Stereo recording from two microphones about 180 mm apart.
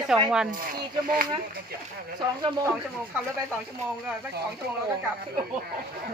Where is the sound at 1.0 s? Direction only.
50° right (ahead or behind).